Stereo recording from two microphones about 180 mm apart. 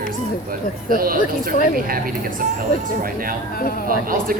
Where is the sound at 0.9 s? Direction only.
50° right (ahead or behind).